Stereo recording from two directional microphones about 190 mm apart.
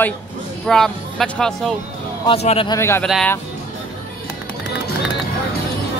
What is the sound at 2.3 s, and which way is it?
Speech, 30° left (ahead or behind).